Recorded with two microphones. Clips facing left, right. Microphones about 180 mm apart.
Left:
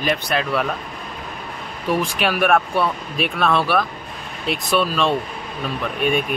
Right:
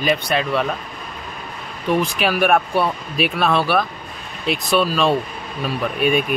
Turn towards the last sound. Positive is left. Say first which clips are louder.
# right 2 dB
turn(degrees=-5)  # may be behind; listen again after turning